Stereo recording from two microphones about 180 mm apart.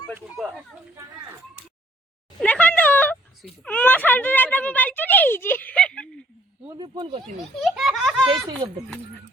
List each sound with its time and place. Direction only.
0.1 s speech: 10° right (ahead or behind)
2.4 s a sound: 10° left (ahead or behind)
6.7 s speech: 30° right (ahead or behind)
7.6 s a child's voice: centre (ahead or behind)